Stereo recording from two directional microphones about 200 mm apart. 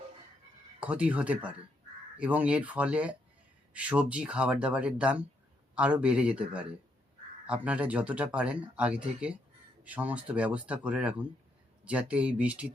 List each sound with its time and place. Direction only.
0.8 s speech: 5° right (ahead or behind)